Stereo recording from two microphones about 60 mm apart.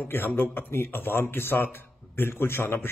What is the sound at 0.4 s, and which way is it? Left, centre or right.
A man's voice, left.